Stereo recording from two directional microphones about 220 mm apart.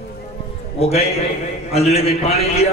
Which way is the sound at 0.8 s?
30° left (ahead or behind).